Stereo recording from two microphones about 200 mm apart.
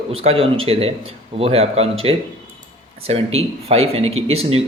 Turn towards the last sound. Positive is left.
turn(degrees=-30)  # may be behind; listen again after turning